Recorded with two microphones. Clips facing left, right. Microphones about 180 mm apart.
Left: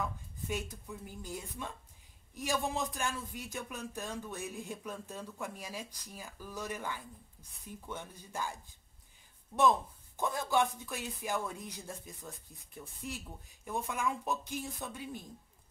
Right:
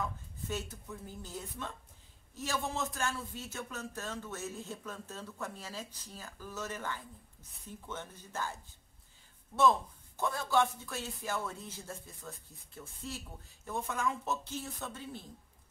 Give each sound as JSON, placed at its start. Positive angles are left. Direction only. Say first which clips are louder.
{"t": 0.5, "sound": "a man's voice", "louder": "left 1 dB", "side_deg": 15}
{"t": 9.6, "sound": "a man's voice", "louder": "even", "side_deg": 15}